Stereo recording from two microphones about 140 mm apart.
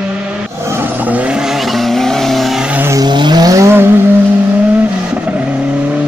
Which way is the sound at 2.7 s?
15° right (ahead or behind).